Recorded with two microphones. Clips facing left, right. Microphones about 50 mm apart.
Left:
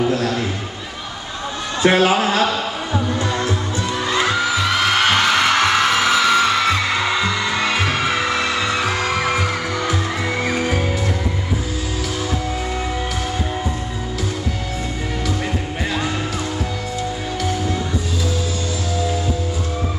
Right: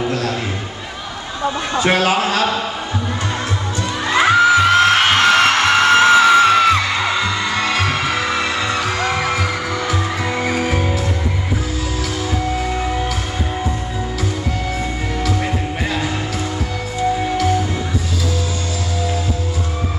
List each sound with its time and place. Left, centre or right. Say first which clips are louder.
1.8 s a man's voice: left 2 dB; left
4.3 s music: right 8 dB; right
4.6 s music: right 6 dB; right
5.0 s music: right 2 dB; centre
5.4 s music: right 2 dB; right
6.1 s music: right 5 dB; centre
6.8 s music: right 1 dB; centre
8.7 s music: right 1 dB; centre